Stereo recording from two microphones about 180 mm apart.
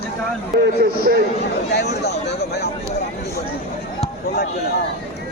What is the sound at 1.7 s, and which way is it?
Speech, 65° left (ahead or behind).